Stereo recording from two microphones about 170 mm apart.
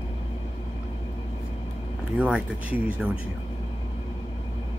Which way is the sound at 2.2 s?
10° right (ahead or behind).